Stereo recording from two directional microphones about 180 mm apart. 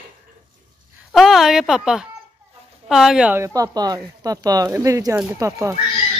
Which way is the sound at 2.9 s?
Centre (ahead or behind).